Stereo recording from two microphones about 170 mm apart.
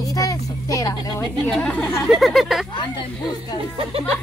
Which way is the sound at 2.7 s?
25° left (ahead or behind).